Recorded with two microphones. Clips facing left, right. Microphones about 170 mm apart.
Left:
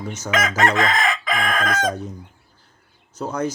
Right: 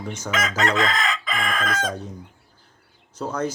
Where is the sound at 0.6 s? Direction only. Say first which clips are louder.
Left 2 dB; 55° left (ahead or behind).